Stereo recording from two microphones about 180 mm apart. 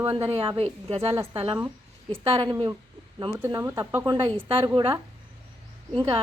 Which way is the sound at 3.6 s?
15° right (ahead or behind).